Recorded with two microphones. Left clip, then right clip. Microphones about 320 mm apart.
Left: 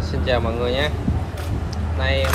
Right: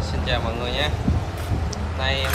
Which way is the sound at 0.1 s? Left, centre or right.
Centre.